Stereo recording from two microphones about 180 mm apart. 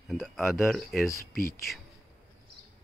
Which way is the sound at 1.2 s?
55° left (ahead or behind).